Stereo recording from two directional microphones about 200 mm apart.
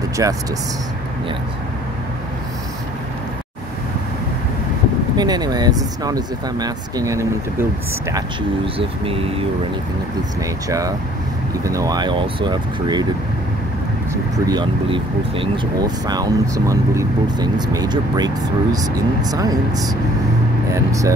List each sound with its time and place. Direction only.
0.2 s speech: 15° right (ahead or behind)
5.1 s speech: 20° right (ahead or behind)
8.7 s speech: 30° right (ahead or behind)
11.6 s speech: 15° right (ahead or behind)
14.4 s speech: 20° right (ahead or behind)